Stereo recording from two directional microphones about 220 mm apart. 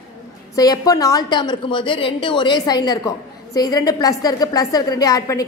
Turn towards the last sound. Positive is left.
turn(degrees=15)  # may be behind; listen again after turning